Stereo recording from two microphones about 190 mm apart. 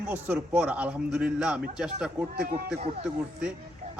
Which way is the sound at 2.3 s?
55° right (ahead or behind).